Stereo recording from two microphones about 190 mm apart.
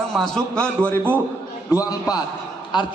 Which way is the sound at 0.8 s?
10° right (ahead or behind).